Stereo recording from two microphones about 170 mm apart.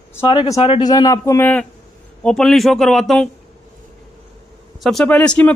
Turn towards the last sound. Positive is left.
turn(degrees=5)  # may be behind; listen again after turning